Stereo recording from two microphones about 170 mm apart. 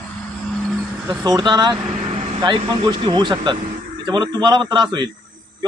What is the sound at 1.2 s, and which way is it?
A man's voice, 25° right (ahead or behind).